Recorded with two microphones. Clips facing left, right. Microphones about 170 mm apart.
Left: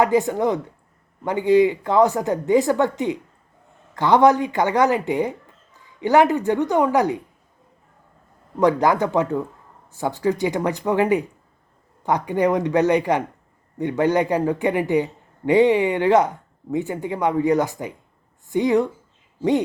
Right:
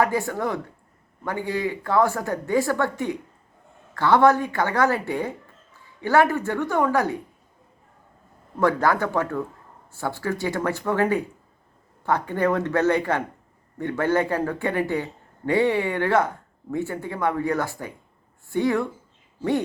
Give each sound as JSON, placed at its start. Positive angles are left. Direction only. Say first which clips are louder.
{"t": 0.0, "sound": "speech", "louder": "left 5 dB", "side_deg": 20}
{"t": 8.5, "sound": "speech", "louder": "left 3 dB", "side_deg": 15}